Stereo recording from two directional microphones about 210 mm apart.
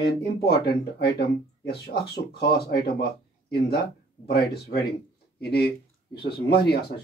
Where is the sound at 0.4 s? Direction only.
50° left (ahead or behind).